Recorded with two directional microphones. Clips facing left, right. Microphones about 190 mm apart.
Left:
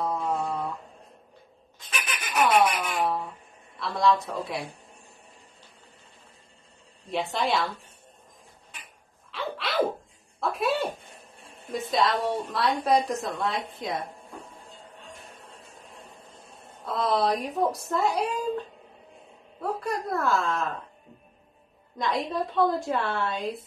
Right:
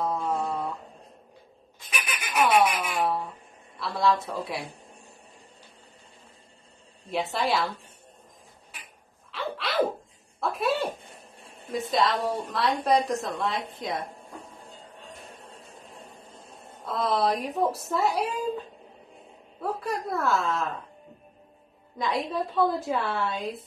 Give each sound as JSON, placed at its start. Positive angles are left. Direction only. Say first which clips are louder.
{"t": 0.0, "sound": "a sound", "louder": "even", "side_deg": 0}
{"t": 2.3, "sound": "a sound", "louder": "even", "side_deg": -5}
{"t": 3.8, "sound": "a woman's voice", "louder": "left 1 dB", "side_deg": 0}
{"t": 7.3, "sound": "a woman's voice", "louder": "even", "side_deg": 0}
{"t": 9.3, "sound": "sneeze", "louder": "even", "side_deg": 0}
{"t": 10.4, "sound": "a sound", "louder": "even", "side_deg": 0}
{"t": 11.7, "sound": "a woman's voice", "louder": "even", "side_deg": 0}
{"t": 16.8, "sound": "a woman's voice", "louder": "even", "side_deg": 0}
{"t": 19.6, "sound": "a woman's voice", "louder": "even", "side_deg": 0}
{"t": 21.9, "sound": "a woman's voice", "louder": "even", "side_deg": 0}